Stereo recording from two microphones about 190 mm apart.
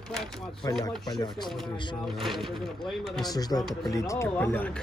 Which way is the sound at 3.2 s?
20° left (ahead or behind).